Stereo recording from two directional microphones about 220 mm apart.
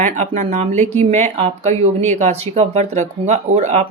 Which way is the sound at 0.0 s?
30° right (ahead or behind).